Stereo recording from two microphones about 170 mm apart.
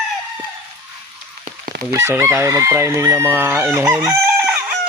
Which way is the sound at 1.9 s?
15° right (ahead or behind).